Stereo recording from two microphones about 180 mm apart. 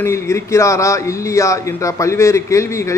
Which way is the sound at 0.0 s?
15° left (ahead or behind).